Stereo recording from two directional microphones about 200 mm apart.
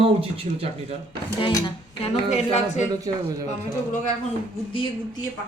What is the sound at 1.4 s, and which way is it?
Speech, 25° left (ahead or behind).